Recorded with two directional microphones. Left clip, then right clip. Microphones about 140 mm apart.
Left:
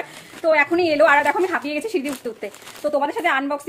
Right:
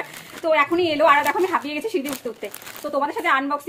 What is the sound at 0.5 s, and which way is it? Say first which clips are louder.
Speech: left 1 dB; 30° left (ahead or behind).